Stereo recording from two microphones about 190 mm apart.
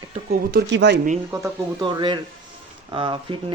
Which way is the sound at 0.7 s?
65° right (ahead or behind).